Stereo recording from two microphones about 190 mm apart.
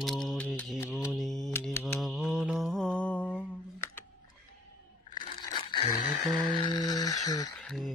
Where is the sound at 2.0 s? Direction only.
Centre (ahead or behind).